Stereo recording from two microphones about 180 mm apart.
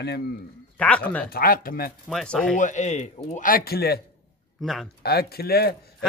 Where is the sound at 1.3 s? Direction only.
55° left (ahead or behind).